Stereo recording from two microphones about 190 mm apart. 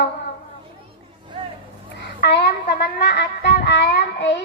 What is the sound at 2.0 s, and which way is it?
Music, 60° left (ahead or behind).